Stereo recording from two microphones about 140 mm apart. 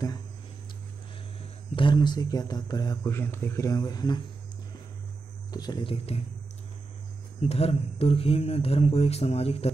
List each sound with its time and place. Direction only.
1.8 s a man's voice: 35° left (ahead or behind)
3.0 s a man's voice: 15° left (ahead or behind)
5.5 s speech: 30° left (ahead or behind)
7.3 s speech: 45° left (ahead or behind)